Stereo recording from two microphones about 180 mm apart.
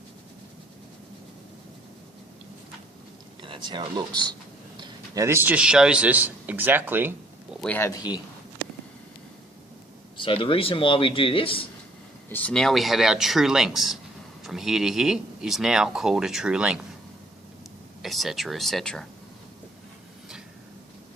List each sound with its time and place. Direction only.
3.4 s a man's voice: 25° right (ahead or behind); by 7.1 s 10° right (ahead or behind)
7.6 s a man's voice: 10° left (ahead or behind)
10.2 s speech: 30° left (ahead or behind)
12.3 s speech: 5° left (ahead or behind)
18.0 s speech: centre (ahead or behind)